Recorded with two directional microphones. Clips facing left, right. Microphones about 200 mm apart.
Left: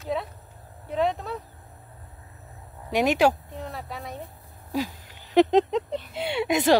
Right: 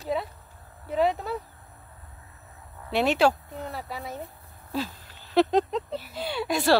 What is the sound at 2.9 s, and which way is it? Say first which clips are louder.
Speech: left 1 dB; 15° left (ahead or behind).